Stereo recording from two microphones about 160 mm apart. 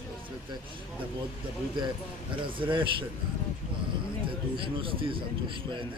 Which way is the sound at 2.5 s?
30° right (ahead or behind).